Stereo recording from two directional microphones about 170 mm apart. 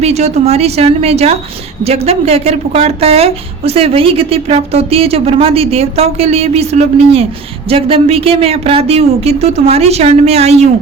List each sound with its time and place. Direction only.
0.0 s speech: 40° right (ahead or behind)